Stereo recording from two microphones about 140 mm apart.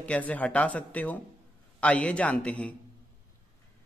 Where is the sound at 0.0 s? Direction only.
10° left (ahead or behind).